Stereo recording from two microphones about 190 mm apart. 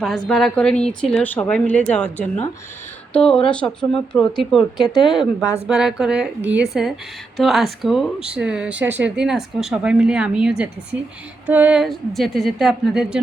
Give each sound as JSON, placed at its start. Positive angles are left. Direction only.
{"t": 0.0, "sound": "speech", "side_deg": 0}